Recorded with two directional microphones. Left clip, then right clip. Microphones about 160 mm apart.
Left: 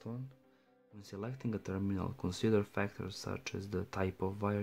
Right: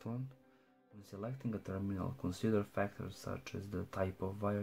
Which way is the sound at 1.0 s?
40° left (ahead or behind).